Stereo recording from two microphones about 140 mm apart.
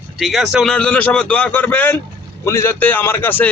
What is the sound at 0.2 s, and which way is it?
A man's voice, centre (ahead or behind).